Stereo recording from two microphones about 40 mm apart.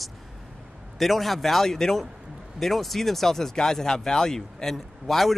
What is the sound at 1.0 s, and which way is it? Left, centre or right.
Speech, centre.